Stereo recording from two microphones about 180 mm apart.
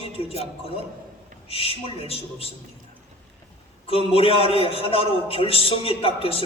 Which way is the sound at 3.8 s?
30° left (ahead or behind).